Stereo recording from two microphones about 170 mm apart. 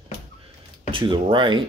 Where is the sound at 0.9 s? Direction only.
30° right (ahead or behind).